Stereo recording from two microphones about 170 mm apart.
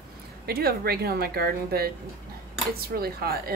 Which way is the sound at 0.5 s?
65° right (ahead or behind).